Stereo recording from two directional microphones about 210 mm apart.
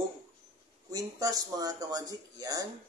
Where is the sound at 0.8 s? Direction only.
15° right (ahead or behind).